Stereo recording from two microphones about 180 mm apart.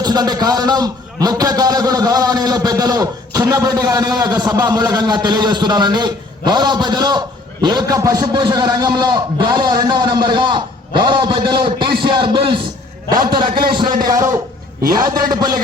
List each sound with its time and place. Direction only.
0.0 s a man's voice: 25° right (ahead or behind)